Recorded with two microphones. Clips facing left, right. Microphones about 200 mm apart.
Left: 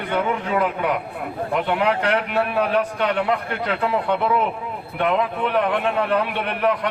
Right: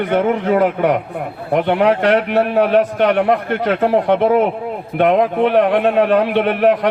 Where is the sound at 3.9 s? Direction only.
85° right.